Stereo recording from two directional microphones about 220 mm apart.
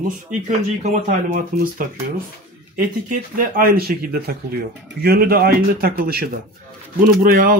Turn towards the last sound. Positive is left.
turn(degrees=-40)  # may be behind; listen again after turning